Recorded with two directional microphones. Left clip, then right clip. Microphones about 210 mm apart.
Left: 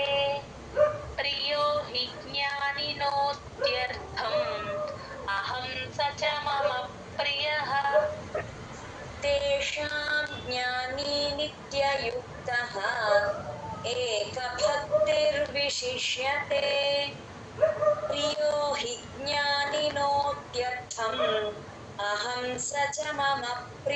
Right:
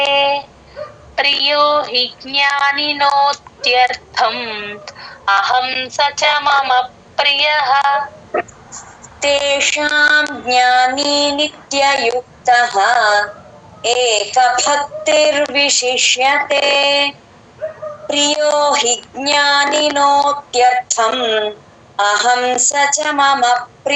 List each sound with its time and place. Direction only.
0.0 s child singing: 45° right (ahead or behind)
1.1 s speech: 45° right (ahead or behind)
9.2 s female singing: 45° right (ahead or behind)